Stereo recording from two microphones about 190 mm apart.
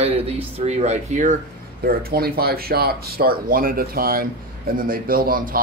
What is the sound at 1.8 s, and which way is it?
Speech, 55° right (ahead or behind).